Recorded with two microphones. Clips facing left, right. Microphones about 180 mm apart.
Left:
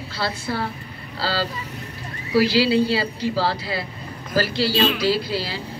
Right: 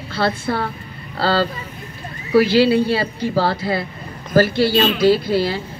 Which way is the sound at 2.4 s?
55° right (ahead or behind).